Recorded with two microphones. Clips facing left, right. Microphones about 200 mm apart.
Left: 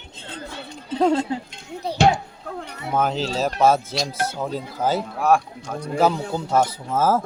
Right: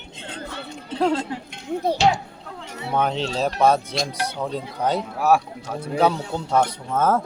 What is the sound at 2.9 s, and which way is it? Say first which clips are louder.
A man's voice: left 1 dB; centre (ahead or behind).